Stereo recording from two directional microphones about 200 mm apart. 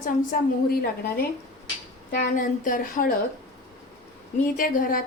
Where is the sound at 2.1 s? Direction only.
45° left (ahead or behind).